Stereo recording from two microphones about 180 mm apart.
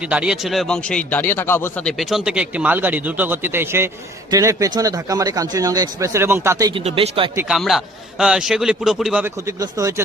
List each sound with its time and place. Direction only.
0.1 s speech: 5° right (ahead or behind)
6.8 s speech: 35° right (ahead or behind)
7.3 s speech: 5° right (ahead or behind)
9.2 s speech: 15° right (ahead or behind)